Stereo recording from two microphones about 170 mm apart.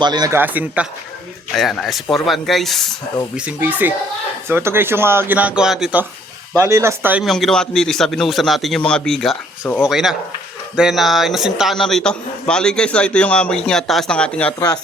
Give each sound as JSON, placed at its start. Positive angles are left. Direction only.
{"t": 0.0, "sound": "a man's voice", "side_deg": -25}
{"t": 0.3, "sound": "a man's voice", "side_deg": -10}
{"t": 6.6, "sound": "speech", "side_deg": -15}
{"t": 7.3, "sound": "a man's voice", "side_deg": 0}